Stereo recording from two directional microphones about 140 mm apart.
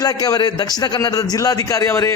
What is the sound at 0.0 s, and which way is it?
A man's voice, 25° left (ahead or behind).